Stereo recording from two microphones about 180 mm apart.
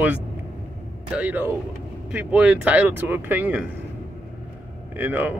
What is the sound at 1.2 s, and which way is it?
Speech, 10° right (ahead or behind).